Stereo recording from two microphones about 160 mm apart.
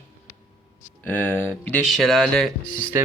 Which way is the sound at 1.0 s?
10° left (ahead or behind).